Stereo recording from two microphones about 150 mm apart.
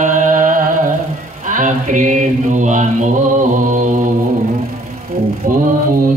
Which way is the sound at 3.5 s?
60° right (ahead or behind).